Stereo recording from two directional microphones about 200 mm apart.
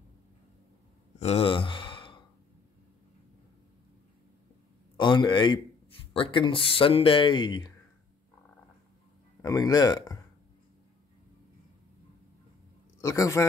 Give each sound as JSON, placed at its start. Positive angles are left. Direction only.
{"t": 1.2, "sound": "sigh", "side_deg": 30}
{"t": 4.9, "sound": "speech", "side_deg": 25}
{"t": 9.4, "sound": "speech", "side_deg": 15}
{"t": 13.0, "sound": "speech", "side_deg": 15}